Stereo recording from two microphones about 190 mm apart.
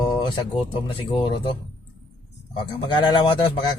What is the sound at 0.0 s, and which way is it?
Speech, 25° left (ahead or behind).